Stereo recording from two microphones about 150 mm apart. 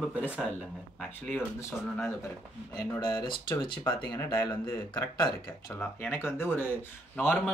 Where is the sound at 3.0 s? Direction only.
30° left (ahead or behind); by 7.5 s 10° left (ahead or behind).